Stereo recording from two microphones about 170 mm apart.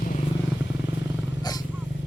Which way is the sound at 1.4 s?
20° left (ahead or behind).